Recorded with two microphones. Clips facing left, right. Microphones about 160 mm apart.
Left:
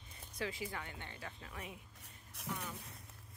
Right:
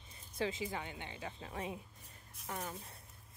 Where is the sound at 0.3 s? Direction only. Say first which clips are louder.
Right 4 dB; 25° right (ahead or behind).